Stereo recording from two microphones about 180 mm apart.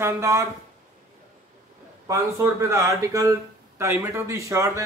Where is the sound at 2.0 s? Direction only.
15° right (ahead or behind).